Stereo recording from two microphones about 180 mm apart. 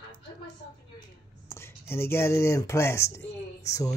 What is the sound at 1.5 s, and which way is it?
Speech, 15° left (ahead or behind).